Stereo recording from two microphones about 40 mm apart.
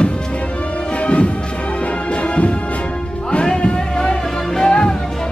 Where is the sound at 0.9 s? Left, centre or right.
Left.